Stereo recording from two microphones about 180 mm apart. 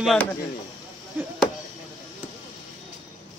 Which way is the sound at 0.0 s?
Centre (ahead or behind).